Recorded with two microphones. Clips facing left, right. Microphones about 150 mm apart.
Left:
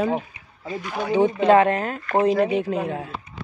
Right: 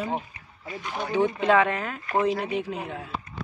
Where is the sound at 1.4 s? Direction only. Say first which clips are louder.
Left 7 dB; 40° left (ahead or behind).